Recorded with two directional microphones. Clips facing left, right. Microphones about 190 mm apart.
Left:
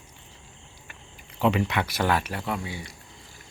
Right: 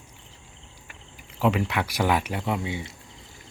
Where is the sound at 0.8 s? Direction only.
5° right (ahead or behind); by 3.0 s 20° right (ahead or behind).